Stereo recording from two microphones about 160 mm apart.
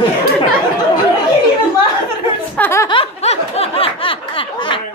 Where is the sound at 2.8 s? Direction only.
35° left (ahead or behind).